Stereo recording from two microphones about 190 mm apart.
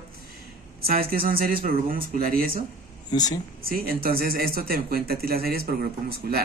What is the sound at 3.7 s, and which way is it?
Speech, 50° right (ahead or behind).